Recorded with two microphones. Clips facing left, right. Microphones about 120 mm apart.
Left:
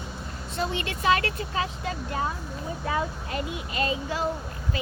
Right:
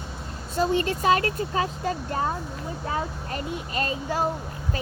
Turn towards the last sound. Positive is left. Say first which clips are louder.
# right 1 dB
turn(degrees=-45)  # may be behind; listen again after turning